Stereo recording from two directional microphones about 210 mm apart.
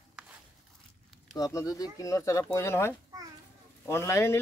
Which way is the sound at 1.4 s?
15° left (ahead or behind).